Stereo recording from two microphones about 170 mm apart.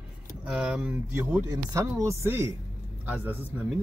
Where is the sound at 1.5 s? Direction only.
20° right (ahead or behind).